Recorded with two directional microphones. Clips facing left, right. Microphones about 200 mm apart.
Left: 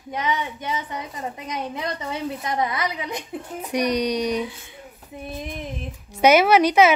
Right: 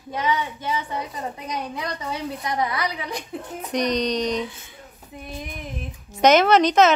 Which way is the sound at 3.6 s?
10° left (ahead or behind).